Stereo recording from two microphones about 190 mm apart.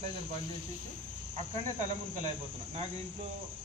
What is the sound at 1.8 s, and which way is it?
Speech, 40° right (ahead or behind).